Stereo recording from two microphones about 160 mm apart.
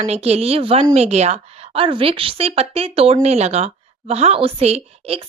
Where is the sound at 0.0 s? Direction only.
40° right (ahead or behind).